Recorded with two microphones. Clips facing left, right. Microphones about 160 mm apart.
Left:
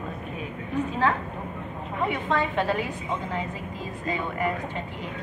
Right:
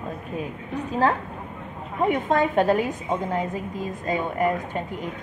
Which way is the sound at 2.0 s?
45° right (ahead or behind).